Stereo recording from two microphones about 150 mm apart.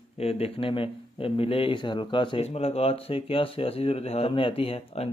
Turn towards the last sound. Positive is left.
turn(degrees=40)  # may be behind; listen again after turning